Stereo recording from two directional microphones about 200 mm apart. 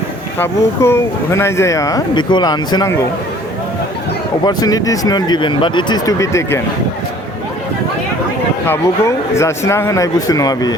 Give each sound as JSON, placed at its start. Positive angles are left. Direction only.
{"t": 0.3, "sound": "speech", "side_deg": 10}
{"t": 4.4, "sound": "speech", "side_deg": 20}
{"t": 8.6, "sound": "speech", "side_deg": 10}